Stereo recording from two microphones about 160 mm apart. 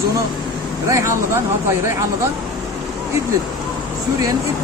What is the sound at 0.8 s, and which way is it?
Speech, 15° right (ahead or behind).